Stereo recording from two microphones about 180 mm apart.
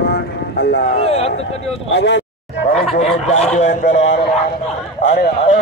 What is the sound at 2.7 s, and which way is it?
Speech, 35° left (ahead or behind).